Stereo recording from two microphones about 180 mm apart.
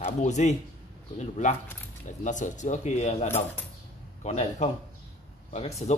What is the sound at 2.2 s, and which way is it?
Speech, 45° left (ahead or behind).